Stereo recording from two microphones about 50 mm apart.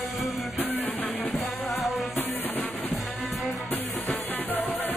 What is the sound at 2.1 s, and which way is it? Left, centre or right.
Music, left.